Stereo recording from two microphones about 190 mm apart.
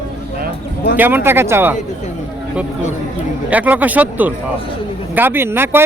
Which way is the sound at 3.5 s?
10° right (ahead or behind).